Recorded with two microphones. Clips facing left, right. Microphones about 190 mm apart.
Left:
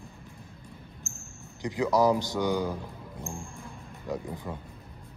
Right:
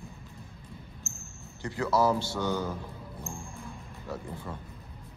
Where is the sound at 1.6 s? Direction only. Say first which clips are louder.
Left 2 dB; 15° left (ahead or behind).